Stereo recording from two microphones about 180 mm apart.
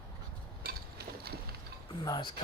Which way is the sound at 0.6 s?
60° right (ahead or behind).